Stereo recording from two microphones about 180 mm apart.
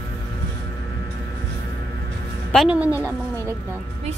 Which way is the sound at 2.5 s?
5° right (ahead or behind).